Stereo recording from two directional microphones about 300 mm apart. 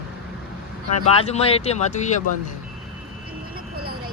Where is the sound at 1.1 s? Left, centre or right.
Left.